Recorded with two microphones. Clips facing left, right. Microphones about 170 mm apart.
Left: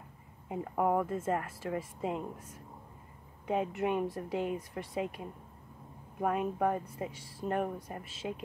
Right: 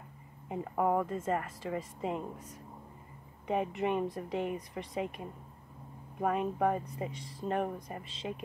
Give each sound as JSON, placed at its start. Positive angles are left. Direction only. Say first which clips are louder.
{"t": 0.7, "sound": "speech", "louder": "even", "side_deg": 10}
{"t": 3.4, "sound": "speech", "louder": "even", "side_deg": 5}